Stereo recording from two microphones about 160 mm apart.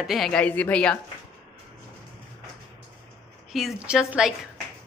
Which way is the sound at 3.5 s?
5° right (ahead or behind).